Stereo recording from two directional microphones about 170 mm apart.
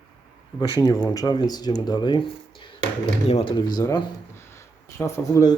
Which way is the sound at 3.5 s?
25° left (ahead or behind).